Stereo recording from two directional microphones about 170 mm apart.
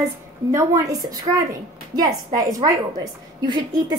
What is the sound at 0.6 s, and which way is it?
A woman's voice, 20° right (ahead or behind).